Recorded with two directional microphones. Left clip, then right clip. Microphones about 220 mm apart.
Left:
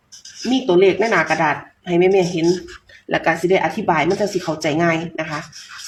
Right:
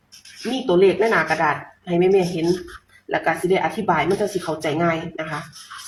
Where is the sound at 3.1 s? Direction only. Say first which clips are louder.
Left 3 dB; 40° left (ahead or behind).